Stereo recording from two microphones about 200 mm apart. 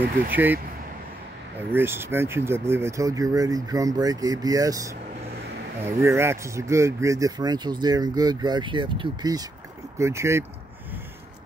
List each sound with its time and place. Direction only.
0.3 s speech: 10° right (ahead or behind)
1.7 s speech: 10° right (ahead or behind)